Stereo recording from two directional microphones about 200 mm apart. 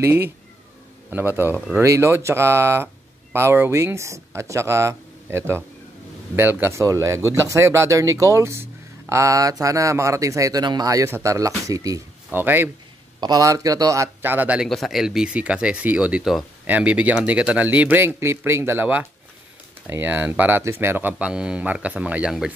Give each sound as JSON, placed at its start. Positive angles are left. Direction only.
{"t": 0.0, "sound": "speech", "side_deg": -10}